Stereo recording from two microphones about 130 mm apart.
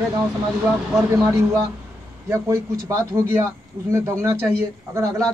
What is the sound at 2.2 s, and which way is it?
A man's voice, 20° right (ahead or behind).